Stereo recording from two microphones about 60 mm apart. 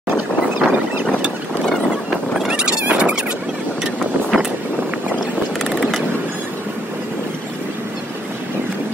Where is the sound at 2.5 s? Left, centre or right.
Centre.